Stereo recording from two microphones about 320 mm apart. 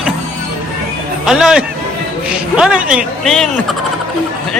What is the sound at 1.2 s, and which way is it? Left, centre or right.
A man's voice, centre.